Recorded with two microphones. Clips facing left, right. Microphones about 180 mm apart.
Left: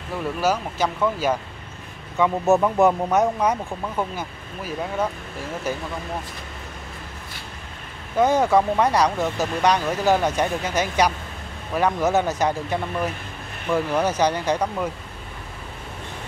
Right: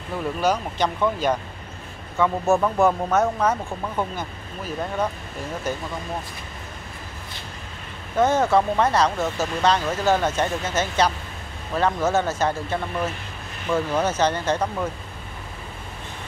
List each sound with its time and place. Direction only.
0.4 s speech: 5° left (ahead or behind)
2.1 s speech: 15° left (ahead or behind)
8.2 s speech: 15° left (ahead or behind)